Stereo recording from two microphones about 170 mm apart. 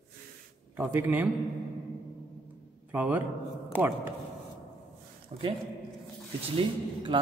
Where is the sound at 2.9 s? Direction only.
10° right (ahead or behind).